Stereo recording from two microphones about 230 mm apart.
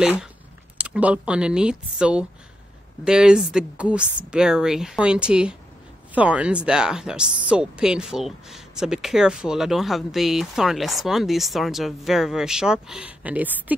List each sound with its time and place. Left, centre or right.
0.0 s speech: centre